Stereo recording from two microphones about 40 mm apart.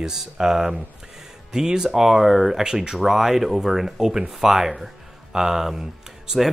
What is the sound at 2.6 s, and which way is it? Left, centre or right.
Speech, centre.